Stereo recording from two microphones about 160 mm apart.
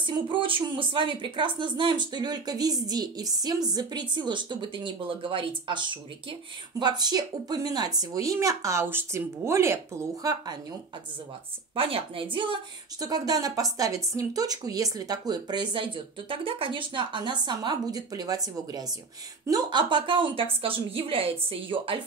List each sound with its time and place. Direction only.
0.0 s speech: 30° right (ahead or behind)
6.8 s speech: 25° right (ahead or behind)
11.7 s a woman's voice: 35° right (ahead or behind)